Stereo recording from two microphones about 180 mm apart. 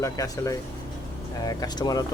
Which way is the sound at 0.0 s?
20° left (ahead or behind).